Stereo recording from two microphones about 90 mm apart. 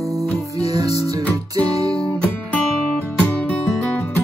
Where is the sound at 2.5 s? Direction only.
15° left (ahead or behind).